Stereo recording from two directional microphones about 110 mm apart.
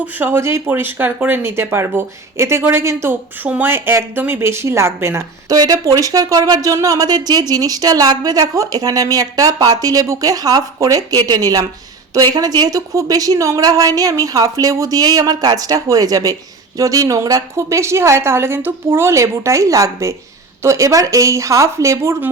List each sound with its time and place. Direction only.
0.0 s speech: 20° right (ahead or behind)
5.5 s a woman's voice: 35° right (ahead or behind)